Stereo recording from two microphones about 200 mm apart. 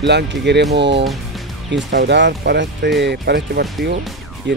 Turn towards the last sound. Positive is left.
turn(degrees=-60)  # may be behind; listen again after turning